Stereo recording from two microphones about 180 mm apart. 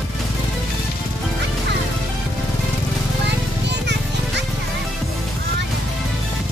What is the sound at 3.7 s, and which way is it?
Music, 75° right (ahead or behind).